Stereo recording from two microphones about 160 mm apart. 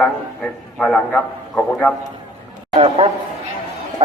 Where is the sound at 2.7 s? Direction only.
40° right (ahead or behind).